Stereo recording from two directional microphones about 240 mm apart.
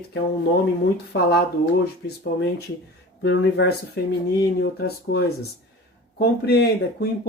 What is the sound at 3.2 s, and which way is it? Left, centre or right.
Speech, left.